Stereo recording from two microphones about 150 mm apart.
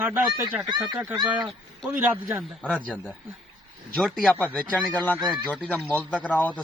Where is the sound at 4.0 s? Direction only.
5° left (ahead or behind).